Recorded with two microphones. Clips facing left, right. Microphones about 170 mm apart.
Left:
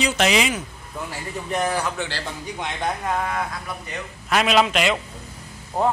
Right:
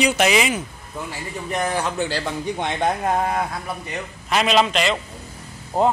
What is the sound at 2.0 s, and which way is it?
Speech, 50° right (ahead or behind).